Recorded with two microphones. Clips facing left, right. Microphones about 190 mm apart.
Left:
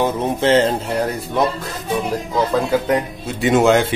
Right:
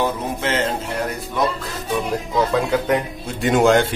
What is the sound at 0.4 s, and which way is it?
Speech, 30° left (ahead or behind).